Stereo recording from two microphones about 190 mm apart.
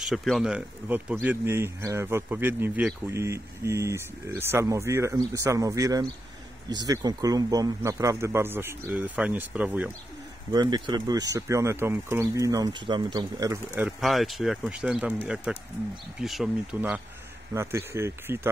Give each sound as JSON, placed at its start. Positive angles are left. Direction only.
{"t": 0.1, "sound": "speech", "side_deg": 0}
{"t": 10.5, "sound": "speech", "side_deg": -20}
{"t": 13.7, "sound": "speech", "side_deg": 0}